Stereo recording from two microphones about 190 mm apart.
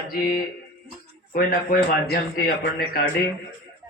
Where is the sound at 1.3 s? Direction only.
50° left (ahead or behind).